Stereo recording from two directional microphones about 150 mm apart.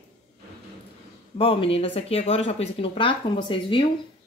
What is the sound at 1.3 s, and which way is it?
Speech, 40° left (ahead or behind).